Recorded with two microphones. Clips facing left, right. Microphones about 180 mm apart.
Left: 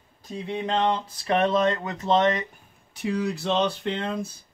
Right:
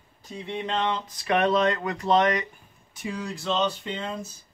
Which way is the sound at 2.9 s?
65° left (ahead or behind).